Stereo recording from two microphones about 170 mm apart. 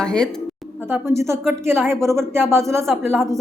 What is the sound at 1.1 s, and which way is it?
Speech, 15° right (ahead or behind).